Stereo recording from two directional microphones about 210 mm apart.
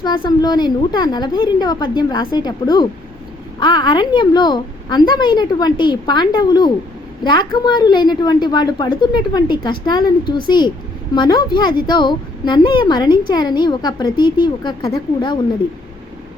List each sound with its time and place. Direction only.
0.0 s a woman's voice: 20° left (ahead or behind)